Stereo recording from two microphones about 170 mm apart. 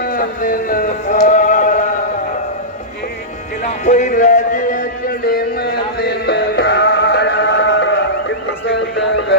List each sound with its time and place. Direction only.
0.0 s music: 55° left (ahead or behind)
3.7 s music: 45° left (ahead or behind); by 7.9 s 90° left
8.6 s a sound: 90° left